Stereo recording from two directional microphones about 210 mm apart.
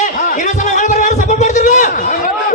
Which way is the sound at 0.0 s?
35° left (ahead or behind).